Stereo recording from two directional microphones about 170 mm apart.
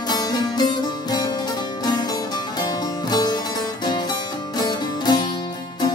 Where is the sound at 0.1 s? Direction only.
25° left (ahead or behind).